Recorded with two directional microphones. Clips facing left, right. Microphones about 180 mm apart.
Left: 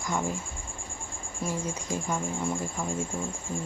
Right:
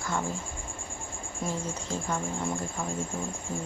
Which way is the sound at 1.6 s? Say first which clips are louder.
Left 1 dB; 10° left (ahead or behind).